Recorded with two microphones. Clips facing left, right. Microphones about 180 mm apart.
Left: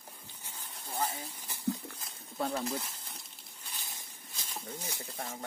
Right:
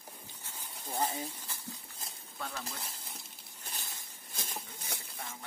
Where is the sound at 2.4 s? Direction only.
35° left (ahead or behind).